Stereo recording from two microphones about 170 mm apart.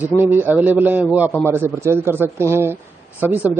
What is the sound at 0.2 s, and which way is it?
Speech, 10° right (ahead or behind).